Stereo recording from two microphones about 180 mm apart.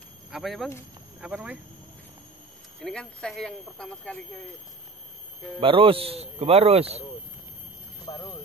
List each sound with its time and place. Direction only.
0.3 s speech: centre (ahead or behind)
2.8 s speech: 5° left (ahead or behind)
5.6 s a man's voice: 30° right (ahead or behind)
8.0 s speech: 20° left (ahead or behind)